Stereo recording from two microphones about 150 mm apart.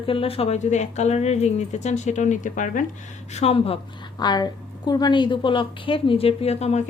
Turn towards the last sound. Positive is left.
turn(degrees=45)  # may be behind; listen again after turning